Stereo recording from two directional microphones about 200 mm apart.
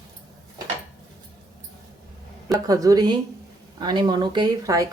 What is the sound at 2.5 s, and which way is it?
Speech, 15° right (ahead or behind).